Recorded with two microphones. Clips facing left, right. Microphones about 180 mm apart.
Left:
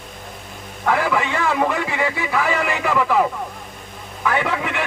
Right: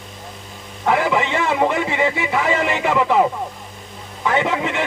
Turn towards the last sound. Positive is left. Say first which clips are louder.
# right 3 dB
turn(degrees=-25)  # may be behind; listen again after turning